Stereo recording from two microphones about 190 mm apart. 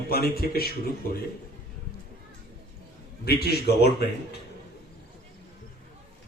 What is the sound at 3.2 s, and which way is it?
Speech, 55° left (ahead or behind).